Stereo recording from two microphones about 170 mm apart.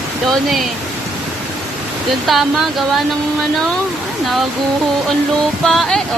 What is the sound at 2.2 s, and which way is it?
Speech, centre (ahead or behind).